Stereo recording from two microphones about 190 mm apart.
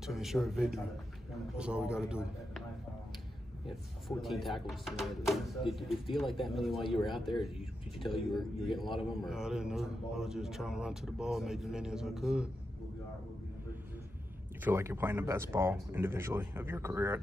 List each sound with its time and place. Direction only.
0.0 s a man's voice: centre (ahead or behind)
4.2 s a man's voice: centre (ahead or behind)
14.6 s speech: 10° right (ahead or behind)